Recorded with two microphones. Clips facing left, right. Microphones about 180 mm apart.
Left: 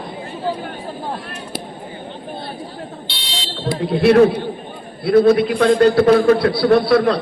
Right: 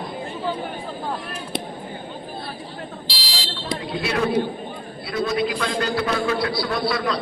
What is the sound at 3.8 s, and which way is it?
A man's voice, 60° left (ahead or behind).